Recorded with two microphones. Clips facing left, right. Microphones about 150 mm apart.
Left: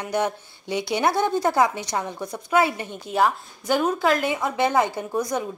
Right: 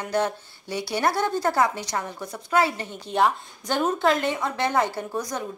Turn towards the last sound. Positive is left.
turn(degrees=10)  # may be behind; listen again after turning